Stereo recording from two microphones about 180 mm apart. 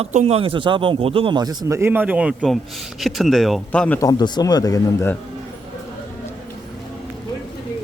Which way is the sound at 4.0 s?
20° left (ahead or behind).